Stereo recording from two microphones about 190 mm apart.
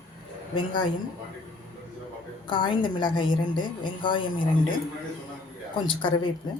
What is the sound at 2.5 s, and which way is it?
A woman's voice, 25° left (ahead or behind).